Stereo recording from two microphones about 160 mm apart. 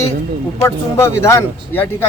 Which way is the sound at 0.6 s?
15° left (ahead or behind).